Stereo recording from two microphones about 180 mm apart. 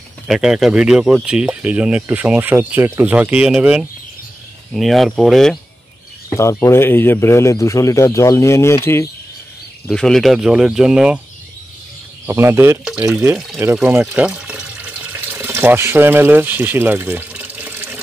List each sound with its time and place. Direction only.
0.3 s speech: centre (ahead or behind)
6.3 s speech: 15° left (ahead or behind)
9.8 s speech: 5° left (ahead or behind)
12.3 s speech: 15° right (ahead or behind)
13.7 s water: 10° right (ahead or behind)